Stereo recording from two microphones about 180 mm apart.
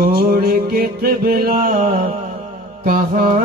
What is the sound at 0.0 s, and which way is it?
Music, 55° right (ahead or behind).